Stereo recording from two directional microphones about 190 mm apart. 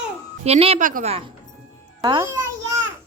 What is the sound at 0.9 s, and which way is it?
Speech, 45° right (ahead or behind).